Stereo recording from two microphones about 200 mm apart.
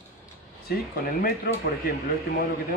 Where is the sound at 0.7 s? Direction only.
45° left (ahead or behind).